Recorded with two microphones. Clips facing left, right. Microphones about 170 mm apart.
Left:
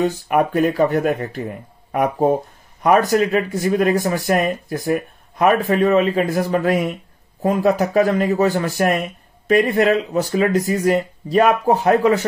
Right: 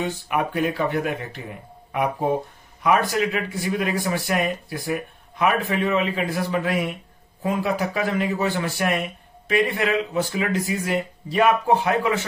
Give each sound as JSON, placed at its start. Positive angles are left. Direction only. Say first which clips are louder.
{"t": 0.0, "sound": "speech", "louder": "left 7 dB", "side_deg": 45}